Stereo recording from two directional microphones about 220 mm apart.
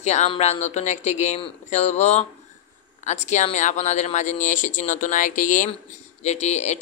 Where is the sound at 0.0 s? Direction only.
30° left (ahead or behind).